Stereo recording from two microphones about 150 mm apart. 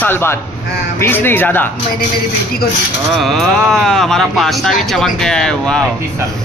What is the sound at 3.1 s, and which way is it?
Speech, centre (ahead or behind).